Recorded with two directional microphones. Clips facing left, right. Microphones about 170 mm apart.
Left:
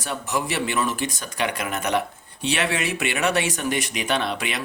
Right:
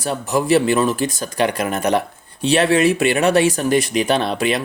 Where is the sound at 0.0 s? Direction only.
35° right (ahead or behind).